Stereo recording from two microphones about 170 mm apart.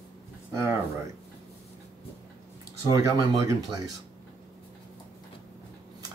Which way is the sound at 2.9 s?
20° right (ahead or behind).